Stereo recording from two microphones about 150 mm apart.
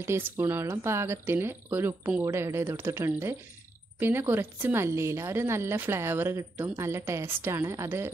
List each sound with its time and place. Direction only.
0.0 s a woman's voice: 15° right (ahead or behind)